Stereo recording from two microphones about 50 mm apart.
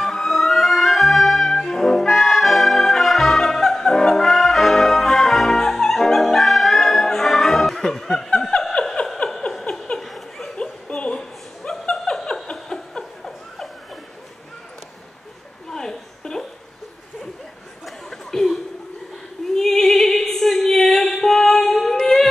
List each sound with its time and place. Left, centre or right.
0.0 s music: centre
8.9 s a sound: centre
9.9 s laughter: centre
10.6 s chuckle: centre
12.0 s a sound: centre
15.7 s a sound: centre
17.8 s chatter: centre
19.5 s opera: centre
22.0 s music: centre